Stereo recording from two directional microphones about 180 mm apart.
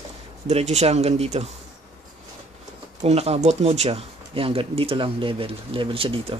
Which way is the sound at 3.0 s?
35° right (ahead or behind).